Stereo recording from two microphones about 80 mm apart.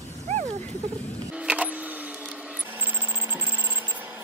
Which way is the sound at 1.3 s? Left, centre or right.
Centre.